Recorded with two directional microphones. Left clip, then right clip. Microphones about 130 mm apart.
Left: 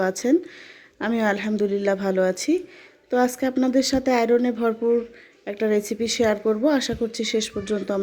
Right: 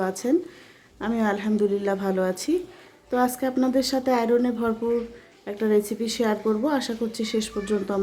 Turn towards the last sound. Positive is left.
turn(degrees=30)  # may be behind; listen again after turning